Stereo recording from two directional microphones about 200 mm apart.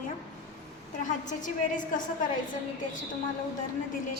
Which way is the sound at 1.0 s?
40° left (ahead or behind).